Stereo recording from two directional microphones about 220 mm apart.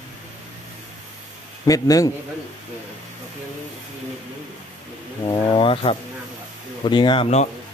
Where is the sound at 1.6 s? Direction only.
15° left (ahead or behind).